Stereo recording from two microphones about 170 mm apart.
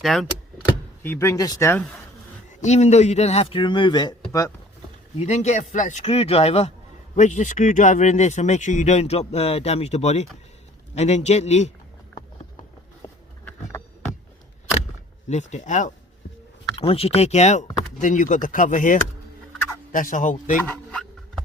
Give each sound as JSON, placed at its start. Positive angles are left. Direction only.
{"t": 0.0, "sound": "speech", "side_deg": 0}
{"t": 0.6, "sound": "speech", "side_deg": 15}
{"t": 2.6, "sound": "speech", "side_deg": 40}
{"t": 5.2, "sound": "speech", "side_deg": 40}
{"t": 13.0, "sound": "a sound", "side_deg": 15}
{"t": 15.3, "sound": "speech", "side_deg": 45}
{"t": 16.7, "sound": "speech", "side_deg": 35}
{"t": 20.7, "sound": "a sound", "side_deg": 5}